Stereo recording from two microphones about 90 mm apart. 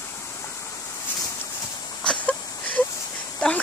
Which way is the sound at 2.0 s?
15° left (ahead or behind).